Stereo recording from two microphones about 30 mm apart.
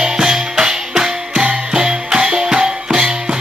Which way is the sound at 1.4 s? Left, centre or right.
Right.